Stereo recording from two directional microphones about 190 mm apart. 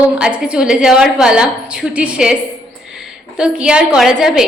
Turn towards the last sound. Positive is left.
turn(degrees=-5)  # may be behind; listen again after turning